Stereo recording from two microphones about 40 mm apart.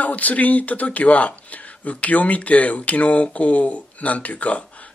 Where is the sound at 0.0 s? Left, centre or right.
Left.